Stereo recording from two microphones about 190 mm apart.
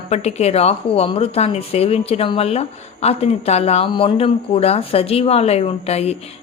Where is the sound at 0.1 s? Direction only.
35° left (ahead or behind).